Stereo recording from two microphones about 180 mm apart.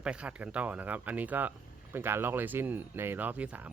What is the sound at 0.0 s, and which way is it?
Speech, 5° right (ahead or behind).